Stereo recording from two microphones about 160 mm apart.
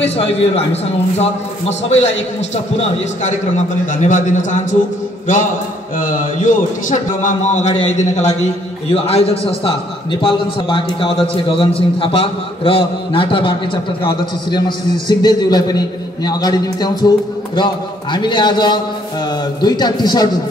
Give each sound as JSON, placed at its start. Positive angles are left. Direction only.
{"t": 0.2, "sound": "a man's voice", "side_deg": 40}
{"t": 5.9, "sound": "a man's voice", "side_deg": 55}
{"t": 18.1, "sound": "a man's voice", "side_deg": 30}